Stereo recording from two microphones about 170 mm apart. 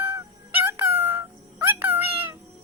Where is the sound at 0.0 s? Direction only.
15° right (ahead or behind).